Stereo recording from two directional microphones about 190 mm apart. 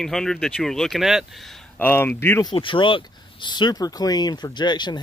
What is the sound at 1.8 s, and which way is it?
Speech, 10° left (ahead or behind).